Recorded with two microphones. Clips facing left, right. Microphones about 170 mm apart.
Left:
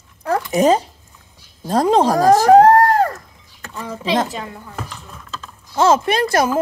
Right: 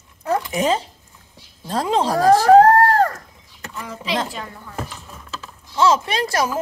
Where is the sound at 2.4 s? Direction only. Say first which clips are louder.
Left 1 dB; 10° left (ahead or behind).